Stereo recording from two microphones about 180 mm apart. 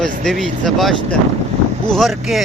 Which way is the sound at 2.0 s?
Centre (ahead or behind).